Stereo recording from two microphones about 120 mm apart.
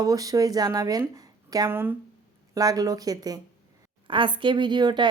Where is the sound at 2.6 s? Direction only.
30° right (ahead or behind).